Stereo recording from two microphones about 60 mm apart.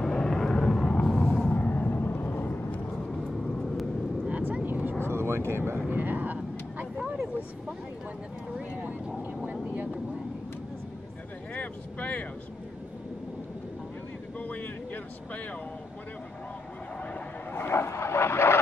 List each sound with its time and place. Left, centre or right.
0.0 s vehicle: centre; by 2.8 s left
3.0 s vehicle: centre
4.3 s vehicle: right
5.0 s vehicle: right
5.9 s vehicle: right
8.7 s vehicle: right
11.5 s vehicle: left
14.4 s vehicle: left
17.5 s vehicle: left